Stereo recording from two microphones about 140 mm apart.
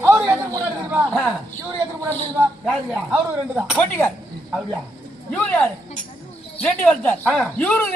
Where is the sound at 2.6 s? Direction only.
Centre (ahead or behind).